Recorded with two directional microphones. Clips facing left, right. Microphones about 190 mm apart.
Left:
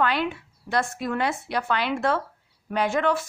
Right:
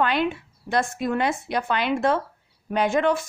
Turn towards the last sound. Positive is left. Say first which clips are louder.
# right 2 dB
turn(degrees=-15)  # may be behind; listen again after turning